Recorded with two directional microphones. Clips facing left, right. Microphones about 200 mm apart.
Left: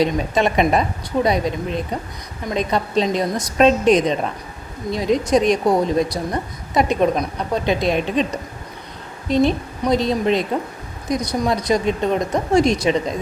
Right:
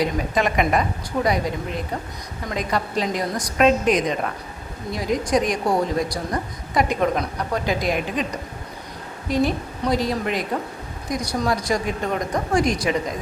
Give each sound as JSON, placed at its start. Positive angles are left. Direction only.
{"t": 0.0, "sound": "a woman's voice", "side_deg": 25}
{"t": 9.3, "sound": "a woman's voice", "side_deg": 25}